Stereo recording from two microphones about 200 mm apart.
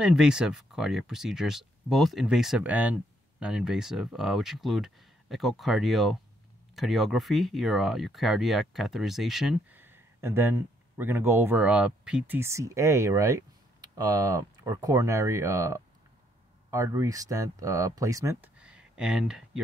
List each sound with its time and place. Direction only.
0.0 s speech: 5° right (ahead or behind)